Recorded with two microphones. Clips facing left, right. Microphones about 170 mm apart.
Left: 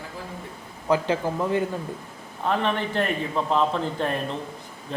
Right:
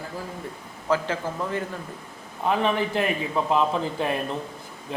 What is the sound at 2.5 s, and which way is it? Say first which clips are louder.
A man's voice: right 2 dB; 5° right (ahead or behind).